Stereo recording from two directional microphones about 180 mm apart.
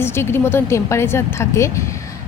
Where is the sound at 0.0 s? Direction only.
15° left (ahead or behind).